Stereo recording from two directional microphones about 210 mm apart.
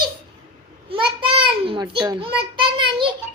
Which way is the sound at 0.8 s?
25° right (ahead or behind).